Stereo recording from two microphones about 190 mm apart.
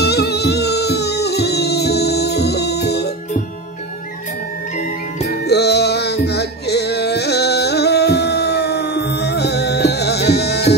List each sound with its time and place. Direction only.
0.0 s music: 60° left (ahead or behind)
5.5 s music: 60° left (ahead or behind)